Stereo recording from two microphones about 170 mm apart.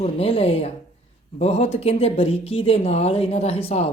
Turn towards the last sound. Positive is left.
turn(degrees=35)  # may be behind; listen again after turning